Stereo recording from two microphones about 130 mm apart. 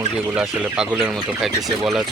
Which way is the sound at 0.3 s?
10° right (ahead or behind).